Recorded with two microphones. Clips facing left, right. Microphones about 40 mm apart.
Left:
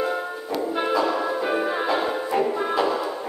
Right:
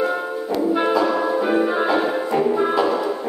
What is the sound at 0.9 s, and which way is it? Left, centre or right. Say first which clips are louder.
Music: right 4 dB; centre.